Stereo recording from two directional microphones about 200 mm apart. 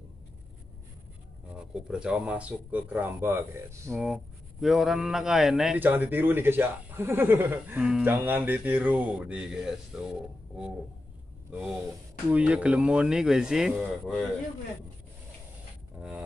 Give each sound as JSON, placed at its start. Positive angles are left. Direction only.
{"t": 1.9, "sound": "a man's voice", "side_deg": -5}
{"t": 3.9, "sound": "a man's voice", "side_deg": 0}
{"t": 12.3, "sound": "speech", "side_deg": -5}
{"t": 16.0, "sound": "a sound", "side_deg": -5}